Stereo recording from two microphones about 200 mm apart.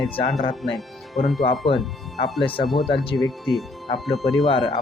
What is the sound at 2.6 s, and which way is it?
Speech, centre (ahead or behind).